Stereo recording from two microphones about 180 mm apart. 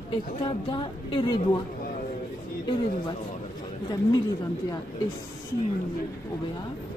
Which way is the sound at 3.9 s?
20° left (ahead or behind).